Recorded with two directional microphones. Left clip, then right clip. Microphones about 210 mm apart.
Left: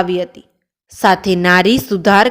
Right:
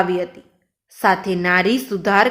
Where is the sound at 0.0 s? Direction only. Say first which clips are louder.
Left 2 dB; 40° left (ahead or behind).